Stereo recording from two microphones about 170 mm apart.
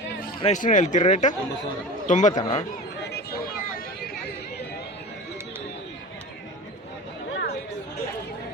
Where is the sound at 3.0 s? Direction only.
70° left (ahead or behind).